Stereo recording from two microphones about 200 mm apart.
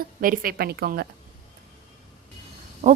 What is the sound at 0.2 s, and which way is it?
Speech, 45° right (ahead or behind).